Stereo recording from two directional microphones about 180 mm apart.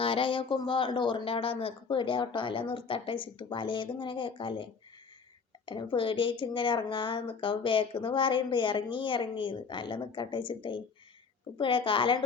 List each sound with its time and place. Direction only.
0.0 s a woman's voice: 30° left (ahead or behind)